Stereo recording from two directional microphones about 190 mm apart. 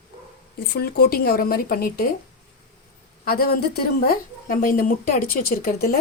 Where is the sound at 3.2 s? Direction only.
50° left (ahead or behind).